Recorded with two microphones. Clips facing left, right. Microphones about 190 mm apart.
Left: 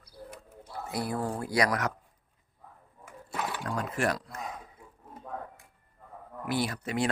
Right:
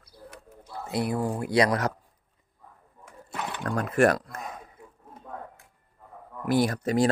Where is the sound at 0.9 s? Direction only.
20° right (ahead or behind).